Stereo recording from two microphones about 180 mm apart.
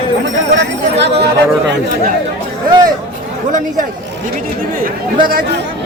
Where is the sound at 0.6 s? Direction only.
70° right (ahead or behind).